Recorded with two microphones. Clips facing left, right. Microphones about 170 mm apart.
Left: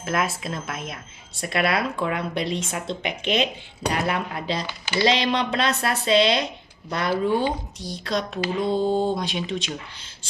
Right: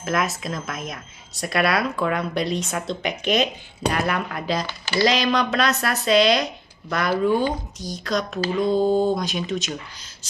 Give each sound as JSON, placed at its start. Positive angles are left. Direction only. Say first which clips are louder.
{"t": 0.0, "sound": "speech", "louder": "right 1 dB", "side_deg": 30}